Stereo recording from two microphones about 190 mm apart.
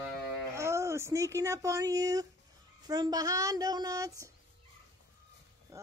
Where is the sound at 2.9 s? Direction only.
20° right (ahead or behind).